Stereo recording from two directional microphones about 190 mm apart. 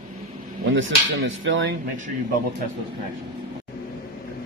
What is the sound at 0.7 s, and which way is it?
Speech, 80° right.